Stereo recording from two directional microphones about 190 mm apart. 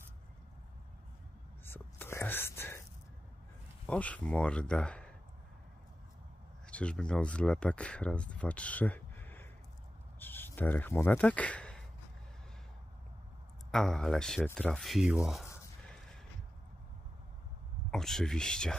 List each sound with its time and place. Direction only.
1.7 s whispering: 10° left (ahead or behind)
3.8 s speech: 5° left (ahead or behind)
6.7 s speech: 5° left (ahead or behind)
13.7 s speech: centre (ahead or behind)
17.9 s speech: 5° left (ahead or behind)